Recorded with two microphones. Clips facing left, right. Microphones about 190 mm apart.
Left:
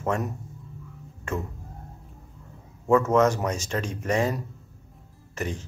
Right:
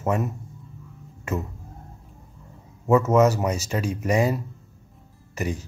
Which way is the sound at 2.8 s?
5° right (ahead or behind).